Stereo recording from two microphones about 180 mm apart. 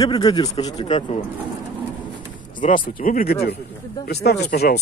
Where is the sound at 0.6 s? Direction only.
35° left (ahead or behind).